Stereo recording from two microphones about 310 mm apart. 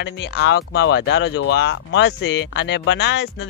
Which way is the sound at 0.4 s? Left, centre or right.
Left.